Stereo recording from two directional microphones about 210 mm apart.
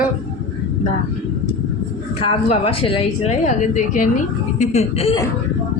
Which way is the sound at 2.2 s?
25° left (ahead or behind).